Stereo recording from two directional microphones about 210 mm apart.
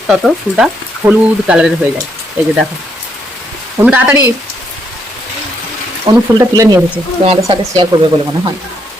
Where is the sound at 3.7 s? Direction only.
10° right (ahead or behind).